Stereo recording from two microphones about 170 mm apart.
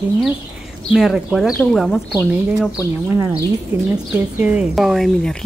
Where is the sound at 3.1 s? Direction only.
15° right (ahead or behind); by 5.4 s 5° left (ahead or behind).